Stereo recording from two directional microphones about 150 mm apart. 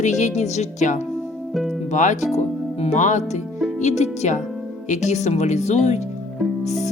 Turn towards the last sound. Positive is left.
turn(degrees=50)  # may be behind; listen again after turning